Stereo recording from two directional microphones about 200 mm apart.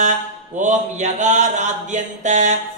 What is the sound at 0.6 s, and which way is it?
Mantra, 35° right (ahead or behind).